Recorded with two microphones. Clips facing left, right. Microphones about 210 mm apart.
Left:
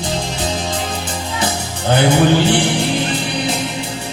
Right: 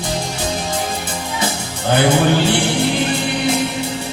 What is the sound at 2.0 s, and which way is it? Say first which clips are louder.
Music: left 2 dB; 20° left (ahead or behind).